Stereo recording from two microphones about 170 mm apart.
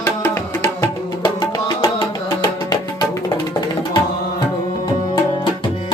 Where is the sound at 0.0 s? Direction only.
15° left (ahead or behind).